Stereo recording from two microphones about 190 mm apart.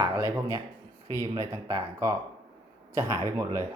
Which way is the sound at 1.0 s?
20° left (ahead or behind).